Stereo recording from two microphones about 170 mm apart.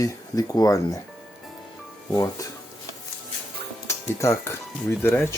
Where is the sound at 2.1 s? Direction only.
20° left (ahead or behind).